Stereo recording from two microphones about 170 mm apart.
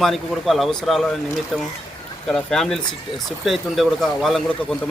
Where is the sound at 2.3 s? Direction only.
5° left (ahead or behind).